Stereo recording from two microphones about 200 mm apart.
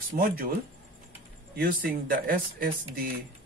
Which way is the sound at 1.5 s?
45° right (ahead or behind).